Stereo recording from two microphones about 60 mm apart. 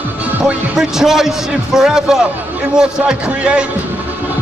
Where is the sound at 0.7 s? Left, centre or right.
Centre.